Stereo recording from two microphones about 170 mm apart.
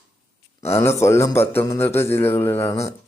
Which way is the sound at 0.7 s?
15° left (ahead or behind).